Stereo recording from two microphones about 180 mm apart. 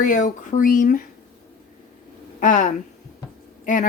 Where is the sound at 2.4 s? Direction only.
45° left (ahead or behind).